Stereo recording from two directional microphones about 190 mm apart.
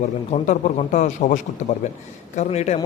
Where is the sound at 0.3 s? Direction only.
35° left (ahead or behind).